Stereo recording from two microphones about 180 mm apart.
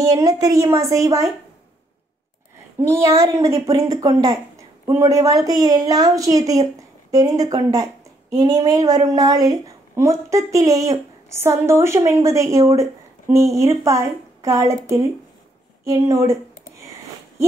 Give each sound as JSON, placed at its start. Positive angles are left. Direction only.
{"t": 0.1, "sound": "a woman's voice", "side_deg": -20}
{"t": 3.1, "sound": "a woman's voice", "side_deg": -20}